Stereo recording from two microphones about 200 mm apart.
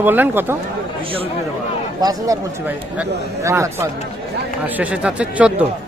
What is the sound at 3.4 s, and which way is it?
Speech, 15° right (ahead or behind).